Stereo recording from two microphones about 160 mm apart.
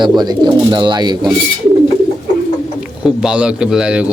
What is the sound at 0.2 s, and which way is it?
Speech, 25° right (ahead or behind).